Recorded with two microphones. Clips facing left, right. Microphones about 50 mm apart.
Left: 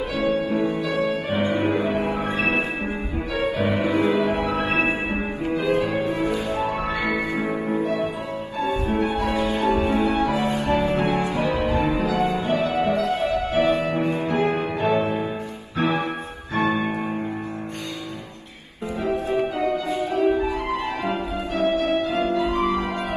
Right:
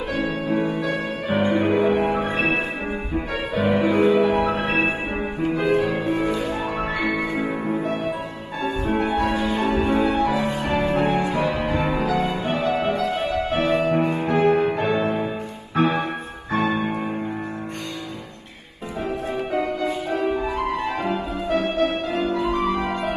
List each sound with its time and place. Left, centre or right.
0.1 s music: right
7.8 s music: right
19.8 s music: right